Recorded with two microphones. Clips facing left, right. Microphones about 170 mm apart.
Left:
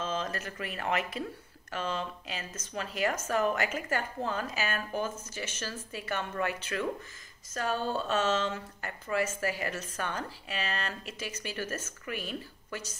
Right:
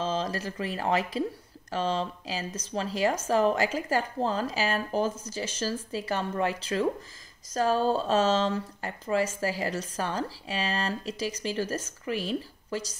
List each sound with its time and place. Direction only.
0.0 s speech: 35° right (ahead or behind)